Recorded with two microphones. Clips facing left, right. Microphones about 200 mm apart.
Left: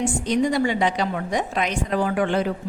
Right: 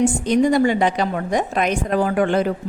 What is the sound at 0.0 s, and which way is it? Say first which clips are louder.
A woman's voice: right 5 dB; 50° right (ahead or behind).